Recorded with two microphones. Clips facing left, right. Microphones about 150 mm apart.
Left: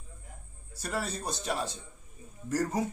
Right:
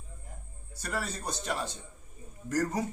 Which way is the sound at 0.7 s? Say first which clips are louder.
Left 1 dB; 25° left (ahead or behind).